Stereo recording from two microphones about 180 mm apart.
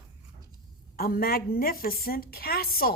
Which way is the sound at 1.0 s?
55° left (ahead or behind).